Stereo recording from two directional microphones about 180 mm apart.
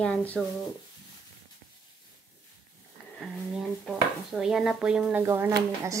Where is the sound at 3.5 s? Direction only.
Centre (ahead or behind).